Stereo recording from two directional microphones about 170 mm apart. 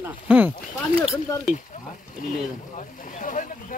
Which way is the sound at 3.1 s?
50° left (ahead or behind).